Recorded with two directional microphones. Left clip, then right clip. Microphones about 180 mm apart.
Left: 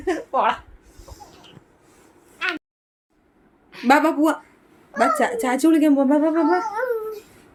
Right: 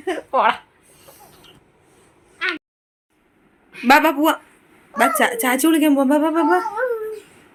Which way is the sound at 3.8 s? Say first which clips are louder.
Right 3 dB; centre (ahead or behind).